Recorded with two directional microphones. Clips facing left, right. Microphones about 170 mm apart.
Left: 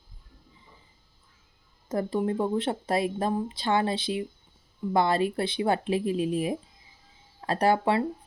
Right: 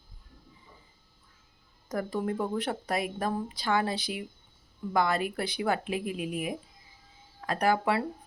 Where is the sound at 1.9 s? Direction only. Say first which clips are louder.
Left 4 dB; 25° left (ahead or behind).